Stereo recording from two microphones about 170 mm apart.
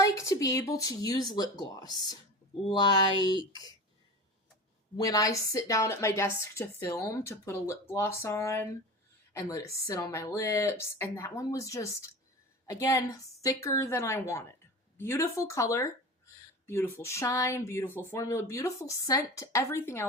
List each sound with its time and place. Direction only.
0.0 s speech: 20° left (ahead or behind)
4.9 s a woman's voice: 20° left (ahead or behind)